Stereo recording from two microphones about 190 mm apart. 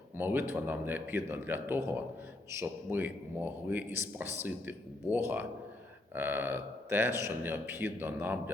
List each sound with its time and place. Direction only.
0.2 s speech: 10° right (ahead or behind)